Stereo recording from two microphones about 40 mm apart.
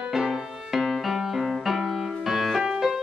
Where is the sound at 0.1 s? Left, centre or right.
Centre.